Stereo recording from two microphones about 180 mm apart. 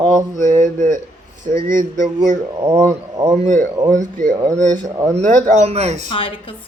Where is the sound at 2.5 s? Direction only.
25° right (ahead or behind).